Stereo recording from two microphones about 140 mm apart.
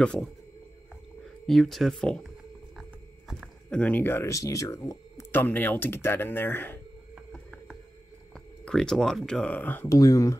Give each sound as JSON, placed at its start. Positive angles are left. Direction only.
{"t": 0.0, "sound": "speech", "side_deg": 5}
{"t": 1.4, "sound": "speech", "side_deg": 0}
{"t": 3.3, "sound": "a sound", "side_deg": 0}
{"t": 3.8, "sound": "speech", "side_deg": 15}
{"t": 7.3, "sound": "music", "side_deg": 0}
{"t": 8.6, "sound": "speech", "side_deg": 5}